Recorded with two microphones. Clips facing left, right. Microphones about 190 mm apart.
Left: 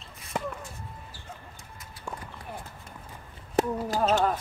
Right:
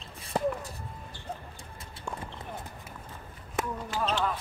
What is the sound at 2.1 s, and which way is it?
Clip-clop, 5° left (ahead or behind).